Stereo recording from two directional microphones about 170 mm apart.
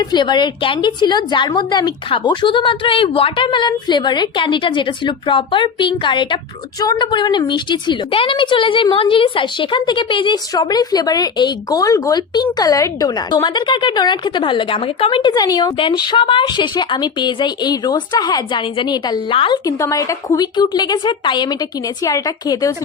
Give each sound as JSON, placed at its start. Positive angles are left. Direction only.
{"t": 0.0, "sound": "a woman's voice", "side_deg": 25}